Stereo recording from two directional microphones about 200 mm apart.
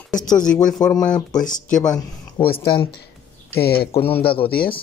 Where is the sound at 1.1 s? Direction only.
20° left (ahead or behind).